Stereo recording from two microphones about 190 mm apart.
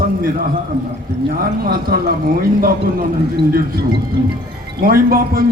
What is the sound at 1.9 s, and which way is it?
Speech, 55° right (ahead or behind).